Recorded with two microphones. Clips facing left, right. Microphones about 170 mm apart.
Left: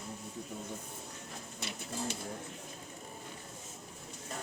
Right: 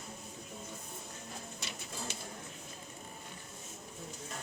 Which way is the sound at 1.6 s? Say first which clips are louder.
Left 8 dB; 55° left (ahead or behind).